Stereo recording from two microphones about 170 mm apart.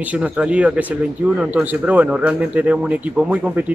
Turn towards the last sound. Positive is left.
turn(degrees=-5)  # may be behind; listen again after turning